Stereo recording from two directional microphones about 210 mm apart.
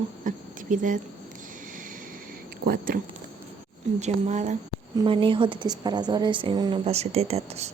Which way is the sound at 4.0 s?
35° right (ahead or behind).